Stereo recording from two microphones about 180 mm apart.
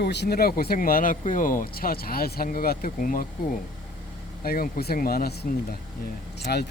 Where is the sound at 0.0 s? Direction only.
65° left (ahead or behind); by 3.2 s 50° left (ahead or behind).